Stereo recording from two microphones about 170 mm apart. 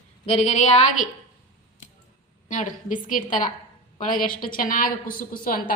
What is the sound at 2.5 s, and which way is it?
A woman's voice, 50° left (ahead or behind).